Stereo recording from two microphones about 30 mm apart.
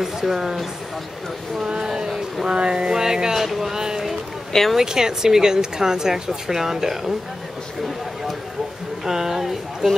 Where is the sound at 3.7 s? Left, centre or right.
Right.